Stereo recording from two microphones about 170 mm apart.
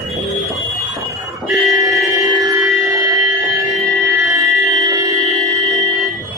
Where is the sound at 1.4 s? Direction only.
Centre (ahead or behind).